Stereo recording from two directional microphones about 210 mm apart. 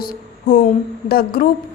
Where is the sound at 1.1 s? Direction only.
45° left (ahead or behind).